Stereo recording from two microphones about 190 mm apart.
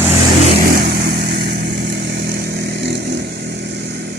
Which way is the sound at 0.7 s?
50° right (ahead or behind).